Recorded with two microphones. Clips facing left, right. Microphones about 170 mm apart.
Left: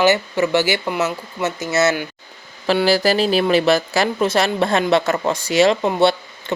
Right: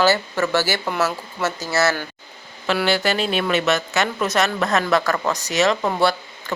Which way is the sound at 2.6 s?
35° left (ahead or behind).